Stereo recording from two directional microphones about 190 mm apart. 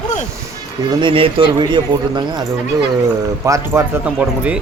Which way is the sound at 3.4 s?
15° right (ahead or behind).